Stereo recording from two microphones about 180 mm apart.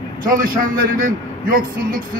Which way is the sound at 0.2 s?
50° right (ahead or behind).